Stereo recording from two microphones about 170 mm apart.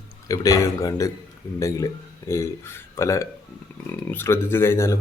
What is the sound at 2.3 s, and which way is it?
Speech, 15° left (ahead or behind).